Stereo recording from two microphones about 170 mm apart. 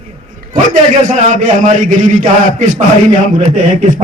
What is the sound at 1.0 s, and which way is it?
A man's voice, 45° right (ahead or behind).